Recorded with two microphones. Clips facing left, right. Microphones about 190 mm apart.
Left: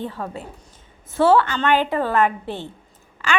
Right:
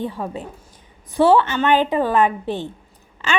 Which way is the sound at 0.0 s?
15° right (ahead or behind).